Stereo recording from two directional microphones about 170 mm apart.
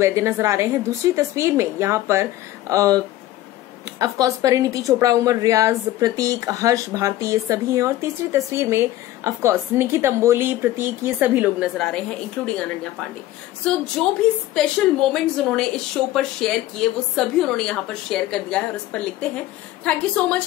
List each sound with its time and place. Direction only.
0.0 s a woman's voice: 15° right (ahead or behind); by 12.5 s 5° left (ahead or behind)
14.0 s a woman's voice: 5° left (ahead or behind)